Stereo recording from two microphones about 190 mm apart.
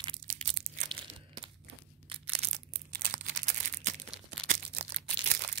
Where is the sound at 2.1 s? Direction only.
35° right (ahead or behind).